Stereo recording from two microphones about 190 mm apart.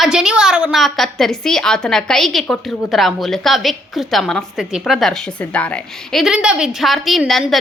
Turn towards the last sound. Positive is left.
turn(degrees=0)  # may be behind; listen again after turning